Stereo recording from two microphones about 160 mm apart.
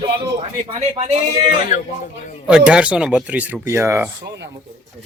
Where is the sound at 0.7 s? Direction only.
40° right (ahead or behind).